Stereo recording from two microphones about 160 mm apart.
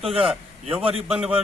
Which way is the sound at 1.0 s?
5° right (ahead or behind).